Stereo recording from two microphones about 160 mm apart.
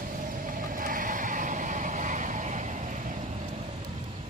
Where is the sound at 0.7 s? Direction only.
60° right (ahead or behind).